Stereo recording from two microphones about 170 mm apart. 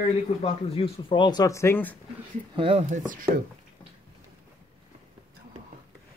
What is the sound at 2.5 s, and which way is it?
Speech, 35° right (ahead or behind).